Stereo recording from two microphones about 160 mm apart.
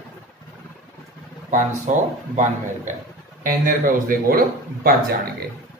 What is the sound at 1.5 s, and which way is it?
Speech, 50° right (ahead or behind).